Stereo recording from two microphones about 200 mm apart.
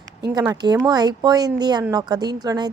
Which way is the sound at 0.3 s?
20° right (ahead or behind).